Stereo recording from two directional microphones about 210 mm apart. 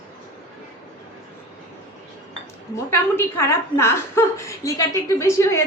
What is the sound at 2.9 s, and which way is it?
A woman's voice, 10° left (ahead or behind).